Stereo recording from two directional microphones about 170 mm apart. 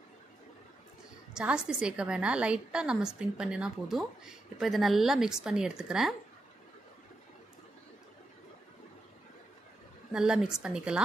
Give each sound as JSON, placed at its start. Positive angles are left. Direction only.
{"t": 1.3, "sound": "a woman's voice", "side_deg": -5}
{"t": 10.1, "sound": "a woman's voice", "side_deg": -5}